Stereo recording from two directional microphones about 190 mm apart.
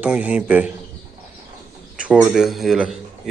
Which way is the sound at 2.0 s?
5° right (ahead or behind).